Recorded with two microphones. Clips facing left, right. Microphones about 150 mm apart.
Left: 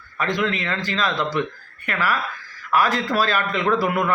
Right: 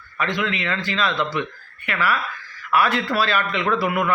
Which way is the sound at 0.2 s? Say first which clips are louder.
Left 1 dB; 40° left (ahead or behind).